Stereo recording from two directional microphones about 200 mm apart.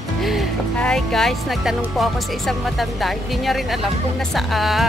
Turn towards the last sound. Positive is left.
turn(degrees=0)  # may be behind; listen again after turning